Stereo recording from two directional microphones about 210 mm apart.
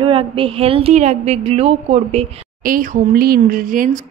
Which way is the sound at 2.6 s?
40° right (ahead or behind).